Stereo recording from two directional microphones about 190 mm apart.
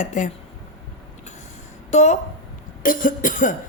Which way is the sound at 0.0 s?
40° left (ahead or behind).